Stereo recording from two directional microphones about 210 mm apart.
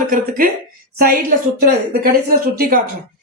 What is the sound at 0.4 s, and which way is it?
Speech, 45° right (ahead or behind).